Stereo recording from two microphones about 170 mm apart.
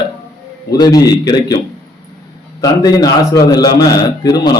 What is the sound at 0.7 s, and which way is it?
Speech, 25° left (ahead or behind).